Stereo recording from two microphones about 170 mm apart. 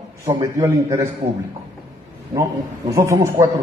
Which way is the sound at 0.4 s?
20° right (ahead or behind).